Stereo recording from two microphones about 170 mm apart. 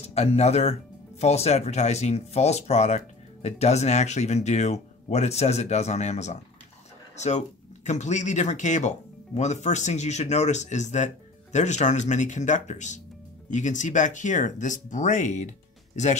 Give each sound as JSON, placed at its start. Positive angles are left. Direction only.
{"t": 0.1, "sound": "speech", "side_deg": 40}